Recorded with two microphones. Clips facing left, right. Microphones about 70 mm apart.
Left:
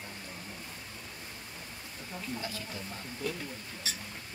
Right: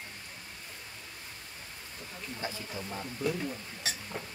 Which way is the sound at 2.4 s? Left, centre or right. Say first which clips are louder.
Right 1 dB; right.